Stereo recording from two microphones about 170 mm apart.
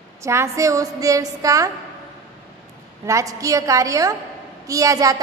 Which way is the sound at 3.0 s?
20° right (ahead or behind).